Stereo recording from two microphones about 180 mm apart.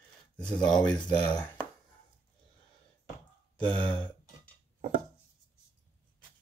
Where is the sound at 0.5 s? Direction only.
5° left (ahead or behind).